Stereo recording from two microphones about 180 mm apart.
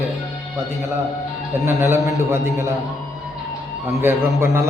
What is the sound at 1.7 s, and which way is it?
A man's voice, 15° right (ahead or behind).